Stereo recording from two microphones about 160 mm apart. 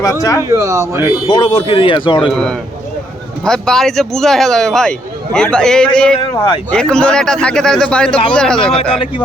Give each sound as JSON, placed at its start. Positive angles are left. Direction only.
{"t": 0.0, "sound": "speech", "side_deg": 20}
{"t": 0.4, "sound": "a man's voice", "side_deg": -20}
{"t": 1.3, "sound": "speech", "side_deg": 30}
{"t": 2.3, "sound": "speech", "side_deg": 5}
{"t": 6.3, "sound": "speech", "side_deg": 30}
{"t": 6.7, "sound": "speech", "side_deg": 5}